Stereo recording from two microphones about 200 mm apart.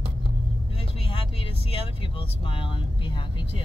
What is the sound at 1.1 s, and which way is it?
Speech, 25° left (ahead or behind).